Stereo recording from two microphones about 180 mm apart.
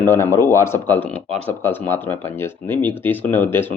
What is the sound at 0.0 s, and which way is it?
Speech, 15° left (ahead or behind).